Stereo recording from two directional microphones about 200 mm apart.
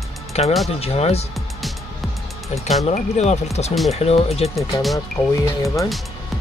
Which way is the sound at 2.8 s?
35° left (ahead or behind).